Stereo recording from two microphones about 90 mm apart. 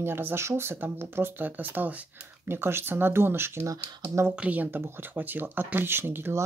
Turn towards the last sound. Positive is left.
turn(degrees=-25)  # may be behind; listen again after turning